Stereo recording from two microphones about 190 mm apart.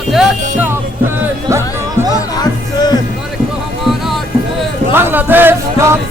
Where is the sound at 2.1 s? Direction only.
20° left (ahead or behind).